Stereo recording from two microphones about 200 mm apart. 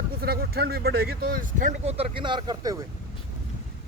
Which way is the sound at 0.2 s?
50° right (ahead or behind).